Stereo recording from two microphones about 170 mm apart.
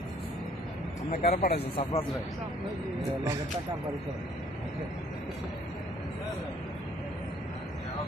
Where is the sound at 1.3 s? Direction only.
40° left (ahead or behind).